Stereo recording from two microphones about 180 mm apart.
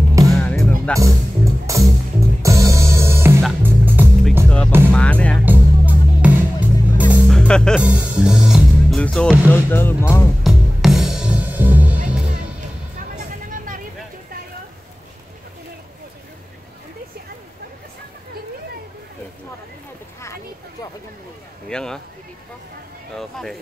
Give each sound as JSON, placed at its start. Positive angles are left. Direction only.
{"t": 0.4, "sound": "music", "side_deg": 10}
{"t": 0.9, "sound": "music", "side_deg": -15}
{"t": 4.5, "sound": "music", "side_deg": 5}
{"t": 5.4, "sound": "music", "side_deg": -10}
{"t": 7.2, "sound": "music", "side_deg": 5}
{"t": 10.4, "sound": "music", "side_deg": 0}
{"t": 13.1, "sound": "music", "side_deg": -50}
{"t": 21.6, "sound": "a sound", "side_deg": 5}
{"t": 23.1, "sound": "a sound", "side_deg": 0}